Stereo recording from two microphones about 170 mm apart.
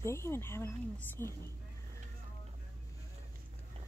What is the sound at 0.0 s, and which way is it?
Speech, 15° left (ahead or behind).